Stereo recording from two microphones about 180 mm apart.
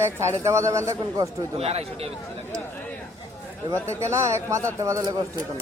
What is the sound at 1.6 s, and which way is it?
Speech, 35° right (ahead or behind).